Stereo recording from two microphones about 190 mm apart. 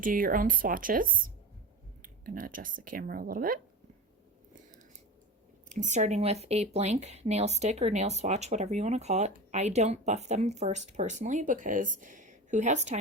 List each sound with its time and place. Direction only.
0.0 s speech: 50° right (ahead or behind)
5.6 s speech: 40° right (ahead or behind)